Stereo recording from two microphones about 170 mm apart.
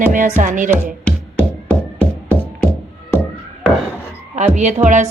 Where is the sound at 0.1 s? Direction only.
50° right (ahead or behind).